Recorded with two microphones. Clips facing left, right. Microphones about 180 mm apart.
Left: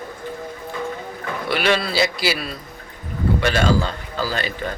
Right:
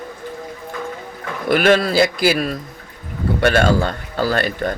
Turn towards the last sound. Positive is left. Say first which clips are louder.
# right 6 dB
turn(degrees=-50)  # may be behind; listen again after turning